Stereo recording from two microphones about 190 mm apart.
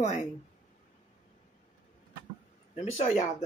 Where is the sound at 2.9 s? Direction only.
40° left (ahead or behind).